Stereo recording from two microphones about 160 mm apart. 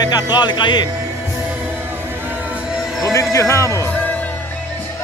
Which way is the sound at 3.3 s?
20° left (ahead or behind).